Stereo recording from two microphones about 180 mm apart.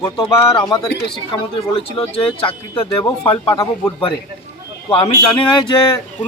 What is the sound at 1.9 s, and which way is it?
A woman's voice, 30° left (ahead or behind).